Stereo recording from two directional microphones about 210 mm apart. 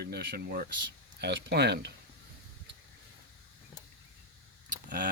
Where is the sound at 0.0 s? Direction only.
50° right (ahead or behind).